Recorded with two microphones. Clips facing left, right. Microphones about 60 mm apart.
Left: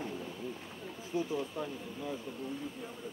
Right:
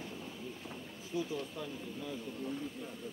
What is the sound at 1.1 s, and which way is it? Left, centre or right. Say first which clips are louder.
Speech: left 3 dB; left.